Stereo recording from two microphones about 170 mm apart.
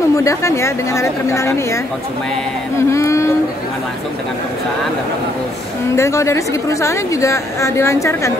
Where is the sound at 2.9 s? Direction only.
15° left (ahead or behind).